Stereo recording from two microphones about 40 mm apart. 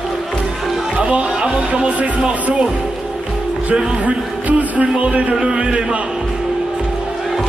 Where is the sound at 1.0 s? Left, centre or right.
Right.